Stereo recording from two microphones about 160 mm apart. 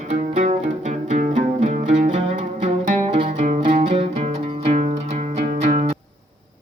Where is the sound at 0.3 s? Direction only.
50° right (ahead or behind).